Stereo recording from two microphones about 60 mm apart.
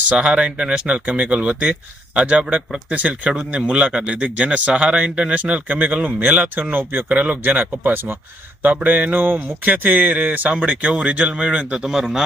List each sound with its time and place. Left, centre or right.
0.0 s speech: right
11.9 s speech: centre